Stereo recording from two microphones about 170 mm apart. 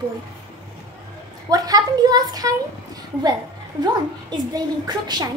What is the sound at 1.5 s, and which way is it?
A woman's voice, 20° right (ahead or behind).